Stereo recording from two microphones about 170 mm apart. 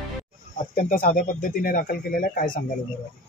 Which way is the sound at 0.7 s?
55° left (ahead or behind).